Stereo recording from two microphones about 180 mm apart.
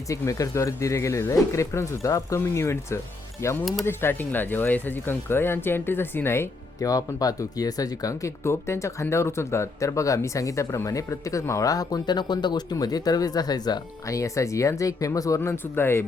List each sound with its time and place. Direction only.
0.1 s speech: 20° left (ahead or behind)